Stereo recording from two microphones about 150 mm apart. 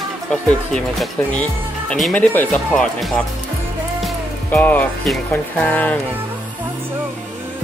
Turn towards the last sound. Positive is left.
turn(degrees=10)  # may be behind; listen again after turning